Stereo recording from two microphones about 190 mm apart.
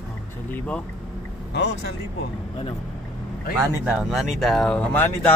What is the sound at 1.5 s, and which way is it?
Speech, 65° left (ahead or behind).